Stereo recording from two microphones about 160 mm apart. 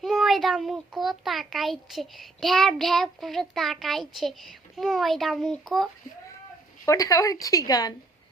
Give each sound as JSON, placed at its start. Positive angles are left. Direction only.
{"t": 0.0, "sound": "a child's voice", "side_deg": 0}
{"t": 6.8, "sound": "speech", "side_deg": 20}